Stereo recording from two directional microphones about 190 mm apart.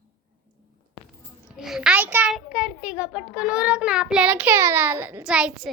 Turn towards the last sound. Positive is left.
turn(degrees=-5)  # may be behind; listen again after turning